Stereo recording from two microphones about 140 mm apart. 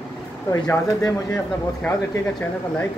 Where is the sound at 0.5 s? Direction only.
20° left (ahead or behind).